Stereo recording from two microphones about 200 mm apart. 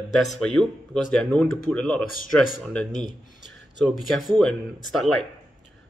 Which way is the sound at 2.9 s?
40° left (ahead or behind).